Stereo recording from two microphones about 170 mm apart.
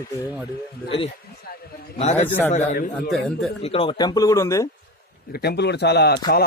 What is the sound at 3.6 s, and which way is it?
Speech, 35° left (ahead or behind).